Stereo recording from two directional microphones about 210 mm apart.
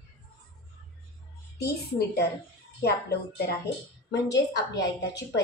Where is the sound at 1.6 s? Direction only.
50° left (ahead or behind).